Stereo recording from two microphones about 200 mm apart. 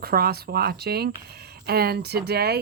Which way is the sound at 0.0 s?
50° right (ahead or behind).